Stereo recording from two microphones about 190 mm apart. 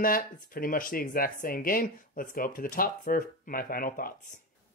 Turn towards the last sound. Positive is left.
turn(degrees=50)  # may be behind; listen again after turning